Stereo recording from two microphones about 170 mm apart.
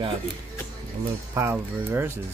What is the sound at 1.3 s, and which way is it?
Speech, 15° right (ahead or behind).